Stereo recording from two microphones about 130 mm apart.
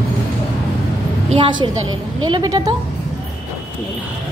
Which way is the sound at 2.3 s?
30° right (ahead or behind).